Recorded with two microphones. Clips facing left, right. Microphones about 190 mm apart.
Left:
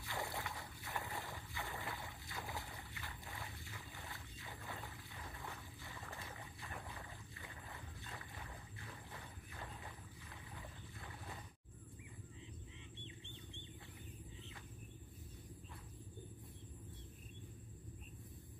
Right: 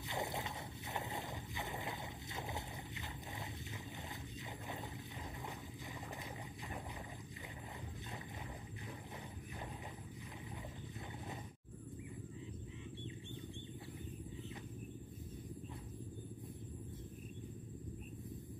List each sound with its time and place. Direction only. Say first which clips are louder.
0.0 s boat: right 3 dB; 20° right (ahead or behind)